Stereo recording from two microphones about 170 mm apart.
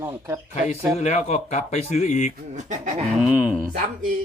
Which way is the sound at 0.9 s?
40° left (ahead or behind).